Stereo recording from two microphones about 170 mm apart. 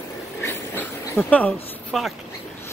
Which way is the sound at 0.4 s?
15° left (ahead or behind).